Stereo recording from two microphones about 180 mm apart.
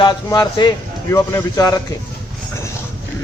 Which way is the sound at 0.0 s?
25° left (ahead or behind).